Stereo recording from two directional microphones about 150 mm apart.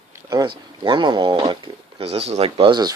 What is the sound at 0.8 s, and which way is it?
Speech, 30° right (ahead or behind).